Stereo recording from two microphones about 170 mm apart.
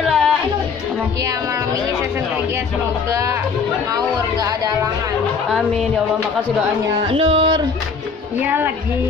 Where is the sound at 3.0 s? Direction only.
15° right (ahead or behind).